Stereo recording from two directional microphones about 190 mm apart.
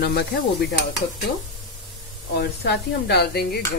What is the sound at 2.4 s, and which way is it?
Speech, 60° left (ahead or behind).